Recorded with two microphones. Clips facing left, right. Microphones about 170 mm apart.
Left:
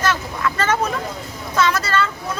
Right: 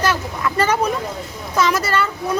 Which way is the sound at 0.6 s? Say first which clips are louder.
Right 3 dB; 10° right (ahead or behind).